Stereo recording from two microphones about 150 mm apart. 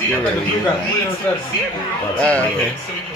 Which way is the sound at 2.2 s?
10° left (ahead or behind).